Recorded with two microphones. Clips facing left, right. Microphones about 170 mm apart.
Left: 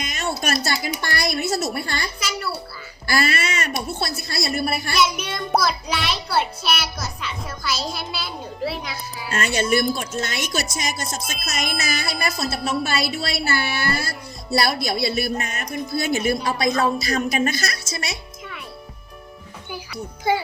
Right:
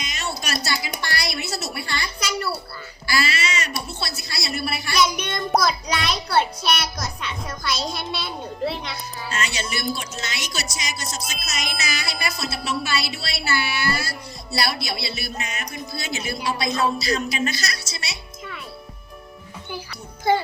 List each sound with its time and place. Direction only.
0.0 s speech: 50° left (ahead or behind)
2.1 s a child's voice: 5° left (ahead or behind)
3.1 s speech: 50° left (ahead or behind)
4.9 s a child's voice: 5° left (ahead or behind)
9.3 s speech: 50° left (ahead or behind)
20.3 s a child's voice: 10° left (ahead or behind)